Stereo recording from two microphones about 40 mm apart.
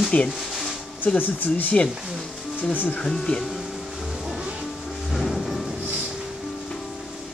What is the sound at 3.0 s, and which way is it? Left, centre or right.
Speech, centre.